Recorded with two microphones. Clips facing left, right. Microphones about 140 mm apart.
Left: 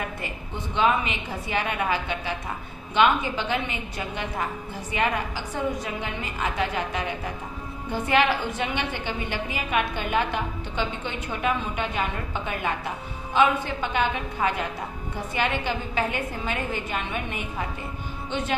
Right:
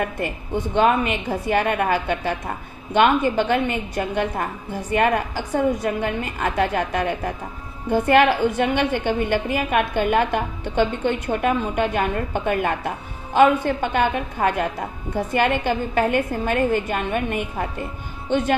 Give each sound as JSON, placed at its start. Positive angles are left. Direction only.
{"t": 0.7, "sound": "a woman's voice", "side_deg": -50}